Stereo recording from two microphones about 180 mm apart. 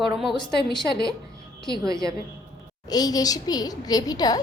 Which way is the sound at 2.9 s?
20° left (ahead or behind).